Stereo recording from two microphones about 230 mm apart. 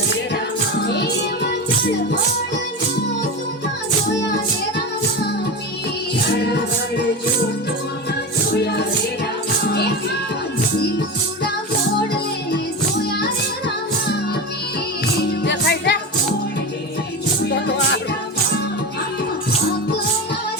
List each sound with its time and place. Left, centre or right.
0.8 s music: left
6.4 s music: left
8.5 s music: left
13.1 s music: left
15.3 s music: left
17.5 s music: left